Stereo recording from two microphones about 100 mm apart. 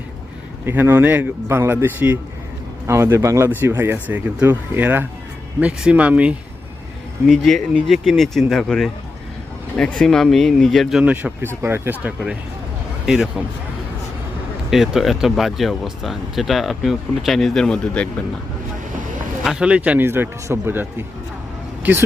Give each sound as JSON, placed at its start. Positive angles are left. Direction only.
{"t": 0.6, "sound": "speech", "side_deg": -20}
{"t": 3.5, "sound": "speech", "side_deg": -20}
{"t": 7.3, "sound": "speech", "side_deg": 5}
{"t": 11.0, "sound": "speech", "side_deg": -15}
{"t": 13.1, "sound": "speech", "side_deg": -5}
{"t": 14.7, "sound": "speech", "side_deg": -5}
{"t": 19.5, "sound": "speech", "side_deg": -10}